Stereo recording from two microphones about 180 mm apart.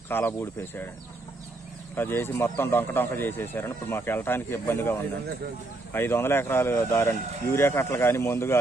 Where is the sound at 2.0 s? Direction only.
10° left (ahead or behind).